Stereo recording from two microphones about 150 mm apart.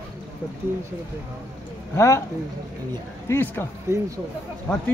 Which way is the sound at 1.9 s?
20° left (ahead or behind).